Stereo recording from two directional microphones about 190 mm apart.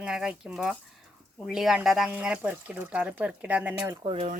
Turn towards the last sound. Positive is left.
turn(degrees=-30)  # may be behind; listen again after turning